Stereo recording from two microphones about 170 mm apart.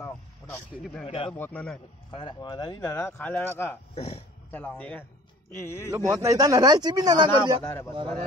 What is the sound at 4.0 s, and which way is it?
Speech, 40° left (ahead or behind).